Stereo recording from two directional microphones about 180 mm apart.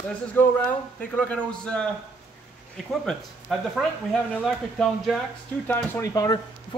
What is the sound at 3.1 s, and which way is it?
A man's voice, centre (ahead or behind).